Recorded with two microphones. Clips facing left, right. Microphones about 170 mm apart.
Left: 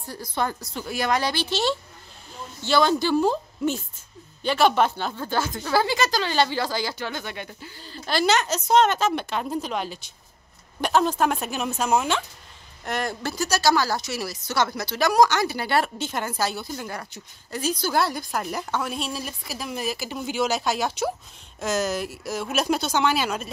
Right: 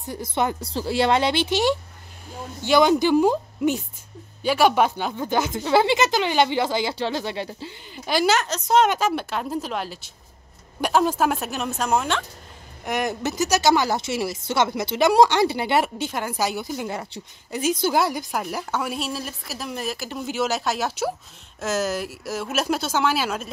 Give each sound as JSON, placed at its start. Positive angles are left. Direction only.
{"t": 0.0, "sound": "speech", "side_deg": -20}
{"t": 8.7, "sound": "speech", "side_deg": -10}
{"t": 12.8, "sound": "speech", "side_deg": -15}